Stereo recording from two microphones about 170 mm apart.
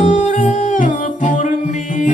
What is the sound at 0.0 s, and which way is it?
Music, 45° left (ahead or behind).